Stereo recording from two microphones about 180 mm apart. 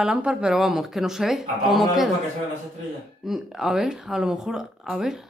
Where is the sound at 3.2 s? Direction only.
Centre (ahead or behind).